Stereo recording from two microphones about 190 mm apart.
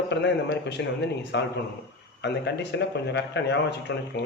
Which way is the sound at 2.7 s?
65° left (ahead or behind).